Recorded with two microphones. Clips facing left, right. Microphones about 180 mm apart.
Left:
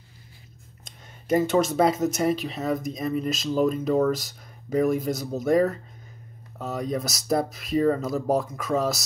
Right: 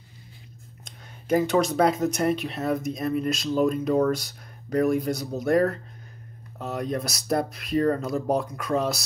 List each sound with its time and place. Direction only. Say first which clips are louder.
0.8 s speech: even; centre (ahead or behind)